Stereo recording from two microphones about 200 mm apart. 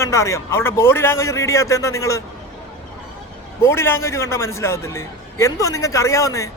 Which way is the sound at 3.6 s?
10° left (ahead or behind).